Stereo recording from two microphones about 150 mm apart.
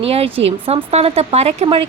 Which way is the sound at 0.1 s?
40° right (ahead or behind).